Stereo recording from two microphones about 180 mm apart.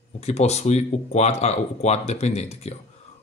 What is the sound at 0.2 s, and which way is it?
Speech, 35° left (ahead or behind).